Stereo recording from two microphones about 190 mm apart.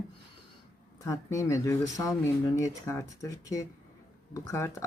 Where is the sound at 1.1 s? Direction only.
15° left (ahead or behind).